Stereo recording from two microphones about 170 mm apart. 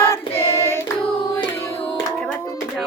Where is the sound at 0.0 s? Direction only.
15° left (ahead or behind).